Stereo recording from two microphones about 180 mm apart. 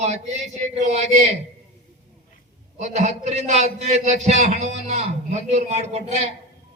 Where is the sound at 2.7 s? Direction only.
40° right (ahead or behind).